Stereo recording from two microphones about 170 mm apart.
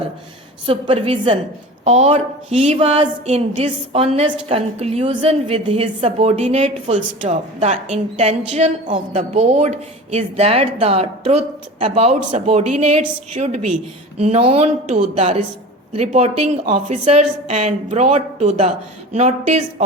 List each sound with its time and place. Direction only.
0.6 s a woman's voice: 30° right (ahead or behind)